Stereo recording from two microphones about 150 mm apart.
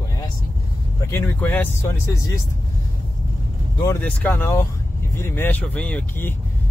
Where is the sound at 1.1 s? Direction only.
15° left (ahead or behind).